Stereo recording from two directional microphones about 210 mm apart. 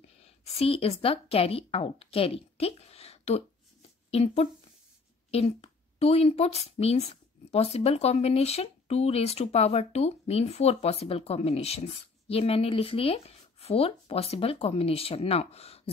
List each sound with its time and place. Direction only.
0.2 s speech: 30° left (ahead or behind)